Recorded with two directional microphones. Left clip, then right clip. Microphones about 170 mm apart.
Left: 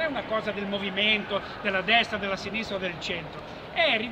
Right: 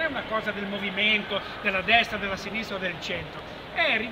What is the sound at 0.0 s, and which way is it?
A man's voice, centre (ahead or behind).